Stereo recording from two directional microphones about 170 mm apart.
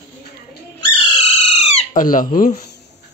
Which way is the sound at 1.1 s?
40° left (ahead or behind).